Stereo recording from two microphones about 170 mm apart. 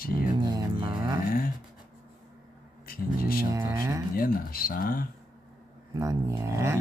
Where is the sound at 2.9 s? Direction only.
60° left (ahead or behind).